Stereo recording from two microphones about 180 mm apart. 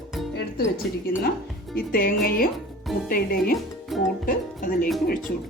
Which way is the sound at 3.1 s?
55° left (ahead or behind).